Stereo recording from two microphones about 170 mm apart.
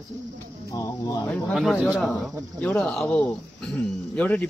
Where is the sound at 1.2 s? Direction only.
5° left (ahead or behind).